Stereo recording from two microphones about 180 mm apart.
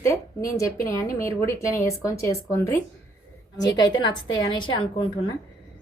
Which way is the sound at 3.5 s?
20° left (ahead or behind).